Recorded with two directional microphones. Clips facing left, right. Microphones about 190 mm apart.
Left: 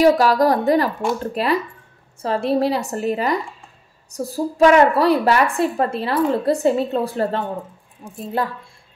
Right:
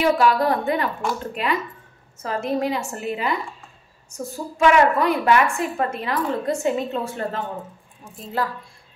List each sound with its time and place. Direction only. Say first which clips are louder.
0.0 s a woman's voice: left 4 dB; 40° left (ahead or behind)
8.0 s a woman's voice: left 3 dB; 25° left (ahead or behind)